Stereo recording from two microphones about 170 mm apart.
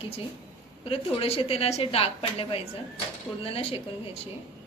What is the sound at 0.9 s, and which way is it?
A woman's voice, 35° left (ahead or behind).